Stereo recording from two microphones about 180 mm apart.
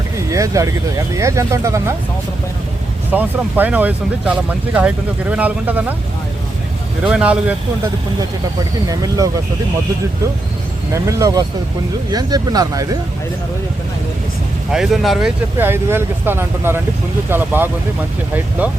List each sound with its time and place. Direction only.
0.3 s speech: 20° right (ahead or behind)
3.1 s speech: 10° right (ahead or behind)
7.0 s speech: 5° right (ahead or behind)
8.9 s speech: 20° right (ahead or behind)
10.9 s speech: 15° right (ahead or behind)
14.7 s speech: centre (ahead or behind)
15.5 s speech: 10° right (ahead or behind)